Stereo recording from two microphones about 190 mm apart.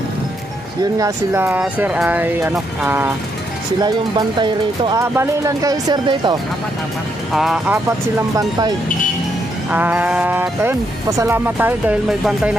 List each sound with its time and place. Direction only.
0.9 s speech: 15° right (ahead or behind)
3.8 s speech: 25° right (ahead or behind)
7.3 s speech: centre (ahead or behind)
8.4 s speech: 20° right (ahead or behind)
9.7 s speech: 10° right (ahead or behind)